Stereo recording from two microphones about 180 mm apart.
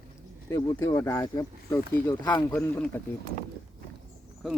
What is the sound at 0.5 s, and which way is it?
Speech, 15° left (ahead or behind).